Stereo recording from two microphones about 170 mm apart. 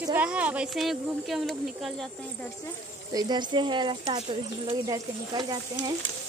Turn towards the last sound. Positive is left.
turn(degrees=-25)  # may be behind; listen again after turning